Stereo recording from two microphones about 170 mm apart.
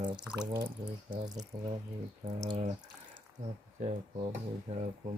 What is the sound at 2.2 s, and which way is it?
Speech, 35° right (ahead or behind).